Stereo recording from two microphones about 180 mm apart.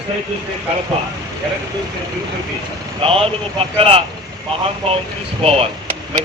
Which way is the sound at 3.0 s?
30° right (ahead or behind).